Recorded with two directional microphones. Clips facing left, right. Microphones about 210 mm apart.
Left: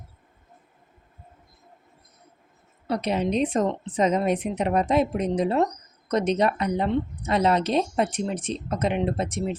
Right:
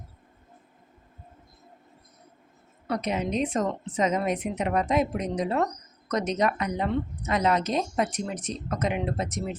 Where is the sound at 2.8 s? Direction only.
30° left (ahead or behind).